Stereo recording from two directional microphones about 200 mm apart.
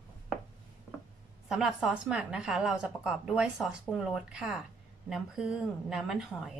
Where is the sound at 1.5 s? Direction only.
Centre (ahead or behind).